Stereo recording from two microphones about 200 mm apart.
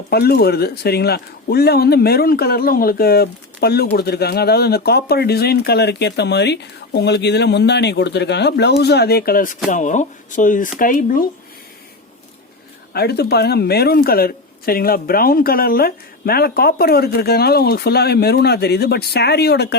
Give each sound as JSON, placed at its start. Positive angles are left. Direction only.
{"t": 0.1, "sound": "speech", "side_deg": 50}
{"t": 12.9, "sound": "speech", "side_deg": 55}